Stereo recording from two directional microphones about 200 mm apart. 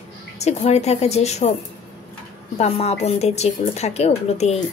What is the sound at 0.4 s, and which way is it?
A woman's voice, 35° left (ahead or behind).